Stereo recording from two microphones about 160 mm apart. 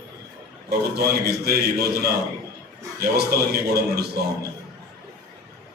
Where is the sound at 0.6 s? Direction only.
80° right.